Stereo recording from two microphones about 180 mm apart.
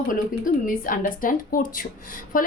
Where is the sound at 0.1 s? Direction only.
50° left (ahead or behind).